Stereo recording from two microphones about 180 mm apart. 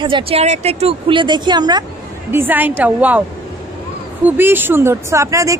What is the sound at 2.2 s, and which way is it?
Speech, 10° right (ahead or behind).